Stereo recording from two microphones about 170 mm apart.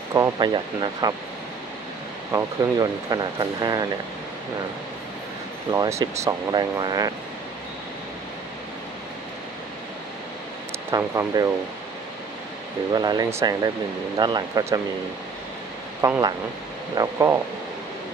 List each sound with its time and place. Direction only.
0.1 s speech: 25° right (ahead or behind)
2.3 s speech: 20° right (ahead or behind)
5.7 s speech: 20° right (ahead or behind)
10.9 s speech: 20° right (ahead or behind)
12.9 s speech: 25° right (ahead or behind)
16.0 s speech: 20° right (ahead or behind)